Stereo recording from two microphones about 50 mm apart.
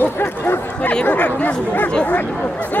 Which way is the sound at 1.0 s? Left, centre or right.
Left.